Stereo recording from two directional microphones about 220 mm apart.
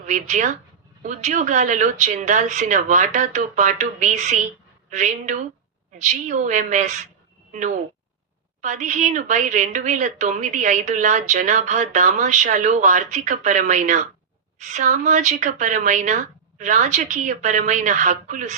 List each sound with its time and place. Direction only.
0.0 s a woman's voice: 35° right (ahead or behind)
8.6 s a woman's voice: 35° right (ahead or behind)